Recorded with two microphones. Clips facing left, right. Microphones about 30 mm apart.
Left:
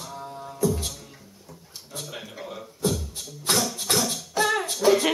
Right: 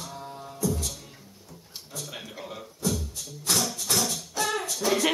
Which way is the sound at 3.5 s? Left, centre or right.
Left.